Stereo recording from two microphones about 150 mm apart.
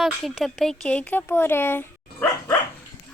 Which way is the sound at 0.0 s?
Centre (ahead or behind).